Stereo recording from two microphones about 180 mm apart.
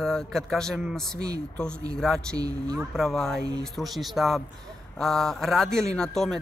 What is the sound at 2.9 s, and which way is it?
A man's voice, centre (ahead or behind).